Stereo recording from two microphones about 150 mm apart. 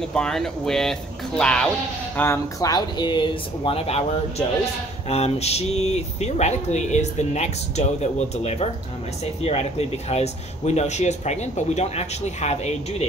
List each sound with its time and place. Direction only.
0.1 s speech: 5° left (ahead or behind)
2.1 s speech: 20° left (ahead or behind); by 12.7 s 45° left (ahead or behind)